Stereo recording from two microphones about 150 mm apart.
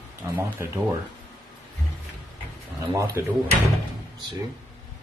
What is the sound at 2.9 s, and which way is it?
Speech, 20° right (ahead or behind).